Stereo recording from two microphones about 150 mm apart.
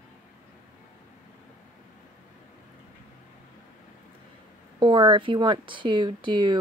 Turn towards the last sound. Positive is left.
turn(degrees=-30)  # may be behind; listen again after turning